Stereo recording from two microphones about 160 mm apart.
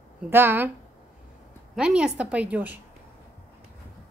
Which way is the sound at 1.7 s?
5° right (ahead or behind).